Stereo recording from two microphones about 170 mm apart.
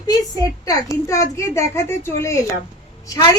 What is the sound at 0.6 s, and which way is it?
A child's voice, 20° left (ahead or behind).